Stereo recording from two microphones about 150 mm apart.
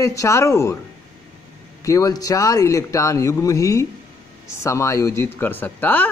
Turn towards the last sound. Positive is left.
turn(degrees=10)  # may be behind; listen again after turning